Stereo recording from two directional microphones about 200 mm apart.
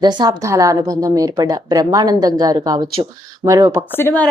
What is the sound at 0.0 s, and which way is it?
A woman's voice, 20° right (ahead or behind).